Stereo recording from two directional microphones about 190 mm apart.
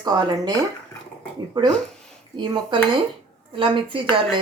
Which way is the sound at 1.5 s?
20° right (ahead or behind).